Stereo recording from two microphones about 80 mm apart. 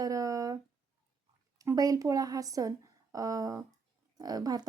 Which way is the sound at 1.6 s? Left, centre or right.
Right.